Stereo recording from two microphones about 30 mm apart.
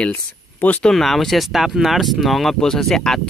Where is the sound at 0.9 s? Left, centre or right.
Centre.